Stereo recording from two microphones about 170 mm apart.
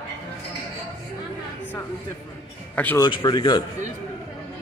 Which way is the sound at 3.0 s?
25° left (ahead or behind).